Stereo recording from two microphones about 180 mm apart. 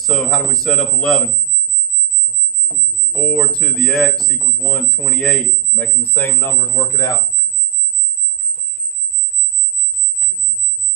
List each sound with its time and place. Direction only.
0.0 s speech: centre (ahead or behind)
3.1 s speech: 5° left (ahead or behind)